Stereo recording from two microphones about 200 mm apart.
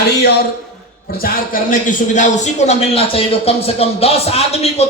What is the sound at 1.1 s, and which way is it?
A man's voice, 45° left (ahead or behind).